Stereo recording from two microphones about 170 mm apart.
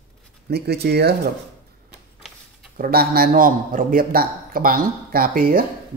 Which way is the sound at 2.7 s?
60° right (ahead or behind).